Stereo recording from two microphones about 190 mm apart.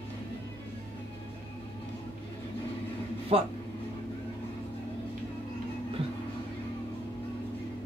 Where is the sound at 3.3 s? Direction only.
30° right (ahead or behind).